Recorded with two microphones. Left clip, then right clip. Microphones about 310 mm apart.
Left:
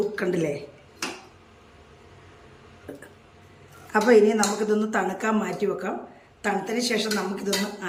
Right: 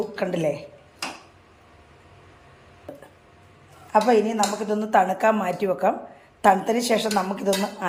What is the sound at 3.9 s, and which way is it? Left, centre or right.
Speech, centre.